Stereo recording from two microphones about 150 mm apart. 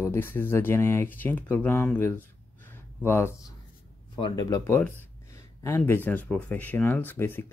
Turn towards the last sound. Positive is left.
turn(degrees=15)  # may be behind; listen again after turning